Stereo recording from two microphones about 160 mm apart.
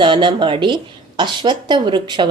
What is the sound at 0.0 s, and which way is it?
A woman's voice, 30° right (ahead or behind).